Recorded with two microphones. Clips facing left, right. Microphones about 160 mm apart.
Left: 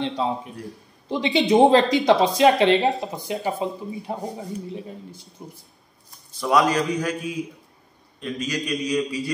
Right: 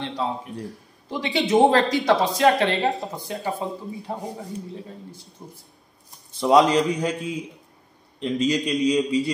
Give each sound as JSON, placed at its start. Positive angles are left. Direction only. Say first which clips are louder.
{"t": 0.2, "sound": "speech", "louder": "left 2 dB", "side_deg": 20}
{"t": 5.4, "sound": "speech", "louder": "left 2 dB", "side_deg": 15}
{"t": 6.4, "sound": "a man's voice", "louder": "right 3 dB", "side_deg": -25}